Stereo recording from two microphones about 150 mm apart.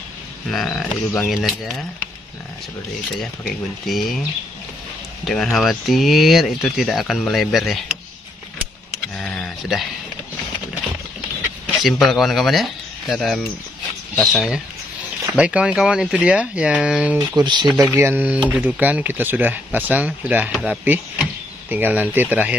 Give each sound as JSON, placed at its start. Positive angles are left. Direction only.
{"t": 0.5, "sound": "speech", "side_deg": 5}
{"t": 3.2, "sound": "speech", "side_deg": 0}
{"t": 5.2, "sound": "speech", "side_deg": 0}
{"t": 9.1, "sound": "a sound", "side_deg": 5}
{"t": 11.6, "sound": "speech", "side_deg": 0}
{"t": 17.4, "sound": "speech", "side_deg": -30}
{"t": 17.8, "sound": "speech", "side_deg": -15}
{"t": 20.8, "sound": "speech", "side_deg": -10}